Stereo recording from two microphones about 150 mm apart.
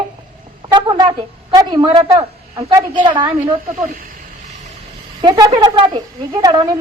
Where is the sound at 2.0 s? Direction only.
25° right (ahead or behind).